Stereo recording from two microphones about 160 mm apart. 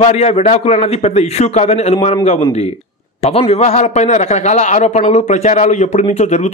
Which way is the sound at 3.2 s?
40° left (ahead or behind).